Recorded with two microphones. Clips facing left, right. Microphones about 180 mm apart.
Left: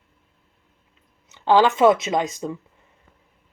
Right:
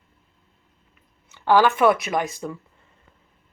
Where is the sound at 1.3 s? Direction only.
20° left (ahead or behind).